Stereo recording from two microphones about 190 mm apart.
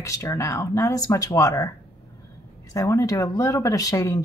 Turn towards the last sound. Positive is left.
turn(degrees=20)  # may be behind; listen again after turning